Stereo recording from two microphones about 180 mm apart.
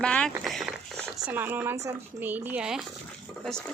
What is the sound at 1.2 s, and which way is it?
Speech, 10° right (ahead or behind).